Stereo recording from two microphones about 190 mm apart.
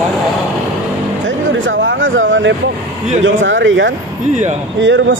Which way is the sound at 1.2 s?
85° right.